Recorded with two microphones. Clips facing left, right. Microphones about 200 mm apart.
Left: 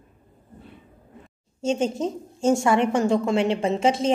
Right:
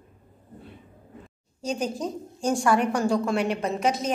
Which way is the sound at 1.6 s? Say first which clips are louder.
Left 5 dB; 25° left (ahead or behind).